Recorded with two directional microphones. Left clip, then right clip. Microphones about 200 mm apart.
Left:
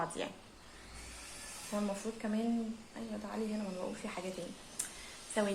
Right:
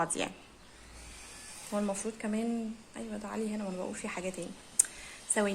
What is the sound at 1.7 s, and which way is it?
Speech, 45° right (ahead or behind).